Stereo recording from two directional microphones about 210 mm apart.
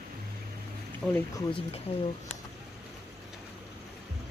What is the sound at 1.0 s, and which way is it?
Speech, centre (ahead or behind).